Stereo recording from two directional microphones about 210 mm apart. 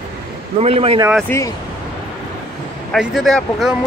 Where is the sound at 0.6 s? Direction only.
30° right (ahead or behind).